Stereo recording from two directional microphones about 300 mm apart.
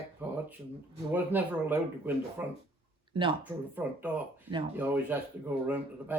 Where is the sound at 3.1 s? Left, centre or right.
Centre.